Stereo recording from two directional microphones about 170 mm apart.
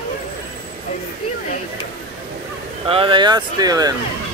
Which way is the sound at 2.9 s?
30° right (ahead or behind).